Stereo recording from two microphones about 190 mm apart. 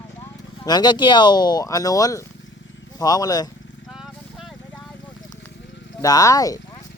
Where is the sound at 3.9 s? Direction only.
Centre (ahead or behind).